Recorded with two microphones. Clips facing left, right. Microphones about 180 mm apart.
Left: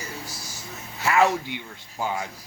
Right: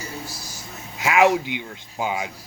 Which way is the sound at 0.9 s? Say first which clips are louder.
Right 3 dB; 15° right (ahead or behind).